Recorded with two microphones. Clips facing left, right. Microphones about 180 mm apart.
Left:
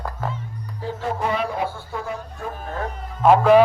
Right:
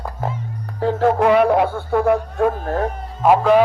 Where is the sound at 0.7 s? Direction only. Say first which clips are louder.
Right 10 dB; 65° right (ahead or behind).